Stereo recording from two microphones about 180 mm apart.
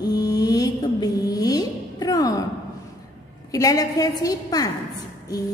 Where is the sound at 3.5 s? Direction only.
20° left (ahead or behind).